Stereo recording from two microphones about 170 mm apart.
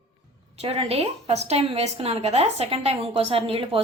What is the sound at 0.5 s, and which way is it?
A woman's voice, 35° right (ahead or behind).